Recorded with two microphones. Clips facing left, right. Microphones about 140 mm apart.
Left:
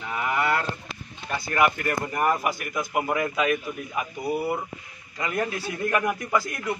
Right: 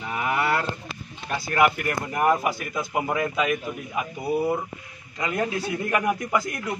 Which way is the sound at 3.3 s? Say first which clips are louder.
Even; 10° right (ahead or behind).